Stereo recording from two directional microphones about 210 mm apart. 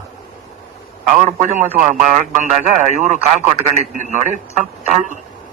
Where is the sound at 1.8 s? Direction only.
35° right (ahead or behind).